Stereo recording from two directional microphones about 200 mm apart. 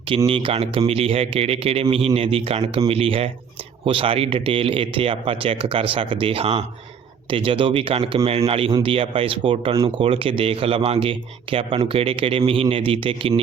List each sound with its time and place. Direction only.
0.3 s speech: 25° right (ahead or behind)